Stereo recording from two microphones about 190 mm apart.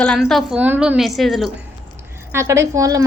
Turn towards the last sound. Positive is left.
turn(degrees=-15)  # may be behind; listen again after turning